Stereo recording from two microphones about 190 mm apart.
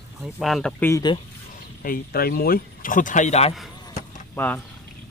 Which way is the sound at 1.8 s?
50° left (ahead or behind).